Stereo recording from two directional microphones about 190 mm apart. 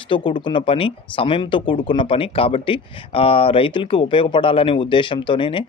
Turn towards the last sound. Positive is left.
turn(degrees=25)  # may be behind; listen again after turning